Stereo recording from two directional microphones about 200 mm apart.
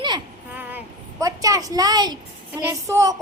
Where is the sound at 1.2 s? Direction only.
15° right (ahead or behind).